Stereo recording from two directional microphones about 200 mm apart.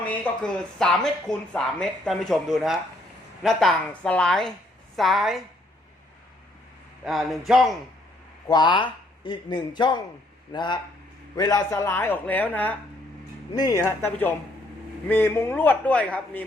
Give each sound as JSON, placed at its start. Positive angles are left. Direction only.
{"t": 0.0, "sound": "speech", "side_deg": 5}
{"t": 7.0, "sound": "speech", "side_deg": 0}
{"t": 8.4, "sound": "speech", "side_deg": 20}
{"t": 13.5, "sound": "speech", "side_deg": 20}